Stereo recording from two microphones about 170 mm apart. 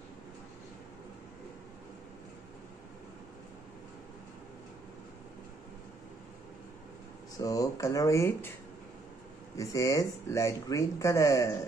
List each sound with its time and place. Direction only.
7.3 s speech: 20° left (ahead or behind)
9.6 s speech: 20° left (ahead or behind)